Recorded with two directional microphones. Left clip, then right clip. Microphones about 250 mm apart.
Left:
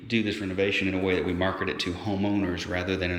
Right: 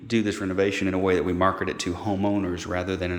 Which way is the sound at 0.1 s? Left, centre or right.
Centre.